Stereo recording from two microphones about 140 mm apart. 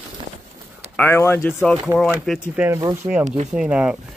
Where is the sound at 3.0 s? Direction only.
35° right (ahead or behind).